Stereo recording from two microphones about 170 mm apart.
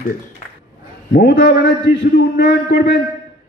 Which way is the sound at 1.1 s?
70° left (ahead or behind).